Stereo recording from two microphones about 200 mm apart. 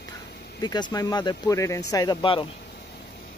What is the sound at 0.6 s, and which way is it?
Speech, 20° left (ahead or behind).